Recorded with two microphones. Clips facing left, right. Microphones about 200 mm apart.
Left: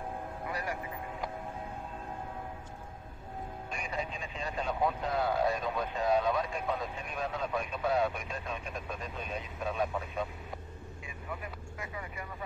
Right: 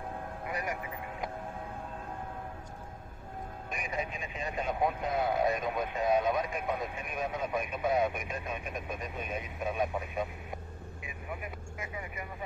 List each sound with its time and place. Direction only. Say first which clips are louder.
0.5 s vehicle: right 1 dB; 20° right (ahead or behind)
3.7 s speech: right 2 dB; 20° right (ahead or behind)